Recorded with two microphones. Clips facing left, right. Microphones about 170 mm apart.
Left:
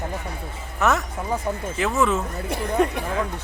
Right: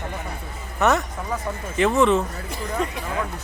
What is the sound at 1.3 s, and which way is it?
Speech, 30° left (ahead or behind).